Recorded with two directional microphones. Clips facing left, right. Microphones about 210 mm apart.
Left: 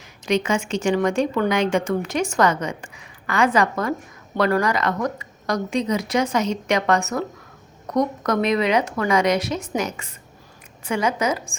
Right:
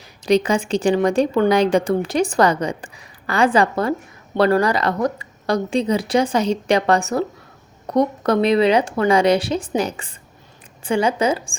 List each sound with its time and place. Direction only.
0.3 s speech: 35° right (ahead or behind)